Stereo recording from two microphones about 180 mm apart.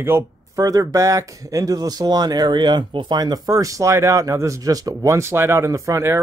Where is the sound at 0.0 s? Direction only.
15° right (ahead or behind).